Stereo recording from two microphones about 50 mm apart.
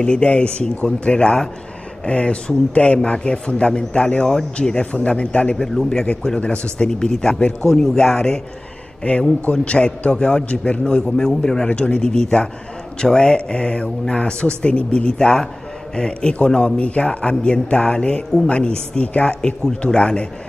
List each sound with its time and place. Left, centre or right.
0.0 s a man's voice: left
5.6 s a man's voice: centre